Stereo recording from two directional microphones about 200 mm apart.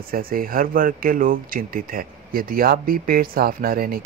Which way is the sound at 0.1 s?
45° right (ahead or behind).